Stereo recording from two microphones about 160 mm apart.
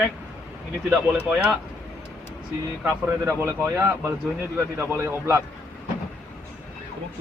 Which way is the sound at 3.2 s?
15° right (ahead or behind).